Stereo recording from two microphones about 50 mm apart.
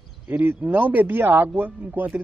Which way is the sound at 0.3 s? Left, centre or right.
Right.